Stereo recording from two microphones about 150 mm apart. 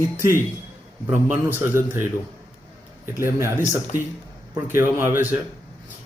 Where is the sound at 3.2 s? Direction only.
20° right (ahead or behind).